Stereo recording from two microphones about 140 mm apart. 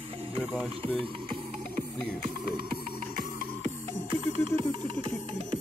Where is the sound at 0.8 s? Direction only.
40° right (ahead or behind).